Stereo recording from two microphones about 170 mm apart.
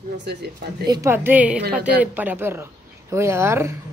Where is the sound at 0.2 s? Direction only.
75° right (ahead or behind).